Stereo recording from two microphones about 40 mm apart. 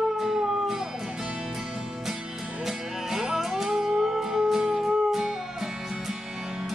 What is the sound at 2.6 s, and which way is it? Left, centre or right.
Music, centre.